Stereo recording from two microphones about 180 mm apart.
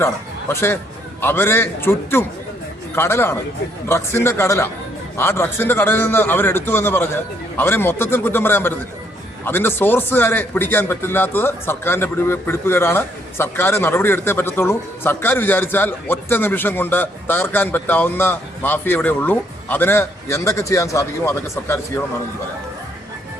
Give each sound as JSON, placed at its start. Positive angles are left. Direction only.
{"t": 1.2, "sound": "speech", "side_deg": 10}